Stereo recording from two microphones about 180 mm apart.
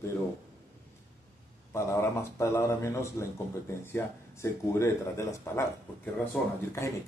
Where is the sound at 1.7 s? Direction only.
15° left (ahead or behind).